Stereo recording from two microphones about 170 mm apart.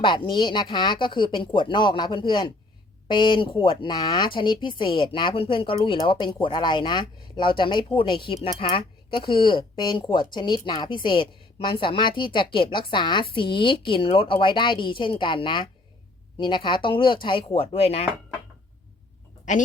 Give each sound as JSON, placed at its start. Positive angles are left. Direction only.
{"t": 0.0, "sound": "speech", "side_deg": 30}